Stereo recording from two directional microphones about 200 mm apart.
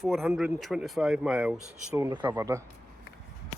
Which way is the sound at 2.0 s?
20° right (ahead or behind).